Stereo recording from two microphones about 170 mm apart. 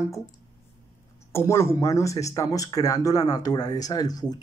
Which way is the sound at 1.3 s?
15° left (ahead or behind).